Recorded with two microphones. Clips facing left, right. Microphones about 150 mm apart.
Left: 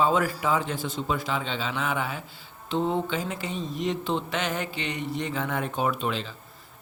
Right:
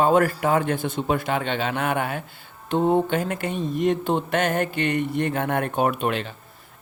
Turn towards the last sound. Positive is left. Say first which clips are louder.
# right 5 dB
turn(degrees=-60)  # may be behind; listen again after turning